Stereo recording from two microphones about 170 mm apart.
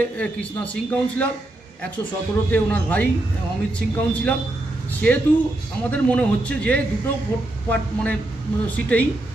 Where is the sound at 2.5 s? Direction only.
10° left (ahead or behind).